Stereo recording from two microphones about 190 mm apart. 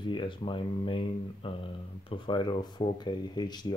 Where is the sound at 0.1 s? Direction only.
25° left (ahead or behind).